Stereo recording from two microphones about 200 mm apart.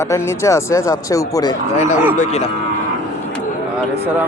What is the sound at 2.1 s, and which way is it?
Speech, 35° left (ahead or behind).